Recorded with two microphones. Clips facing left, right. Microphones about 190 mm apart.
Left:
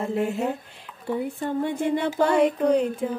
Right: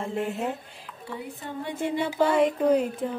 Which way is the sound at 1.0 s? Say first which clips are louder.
Left 9 dB; 50° left (ahead or behind).